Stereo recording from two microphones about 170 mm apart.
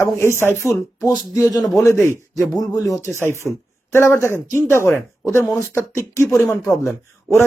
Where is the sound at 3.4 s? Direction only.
Centre (ahead or behind).